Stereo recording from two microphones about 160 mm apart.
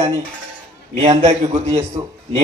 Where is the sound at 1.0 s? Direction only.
45° right (ahead or behind).